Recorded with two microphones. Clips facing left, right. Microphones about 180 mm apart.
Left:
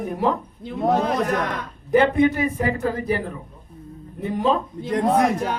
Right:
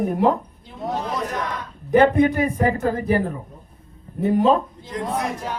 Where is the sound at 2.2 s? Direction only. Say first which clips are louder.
Right 1 dB; 40° right (ahead or behind).